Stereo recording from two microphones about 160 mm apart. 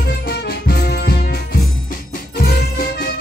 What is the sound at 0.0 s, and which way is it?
Music, 80° left.